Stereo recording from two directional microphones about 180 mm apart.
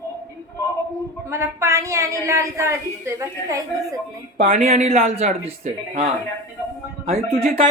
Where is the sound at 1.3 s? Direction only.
15° right (ahead or behind).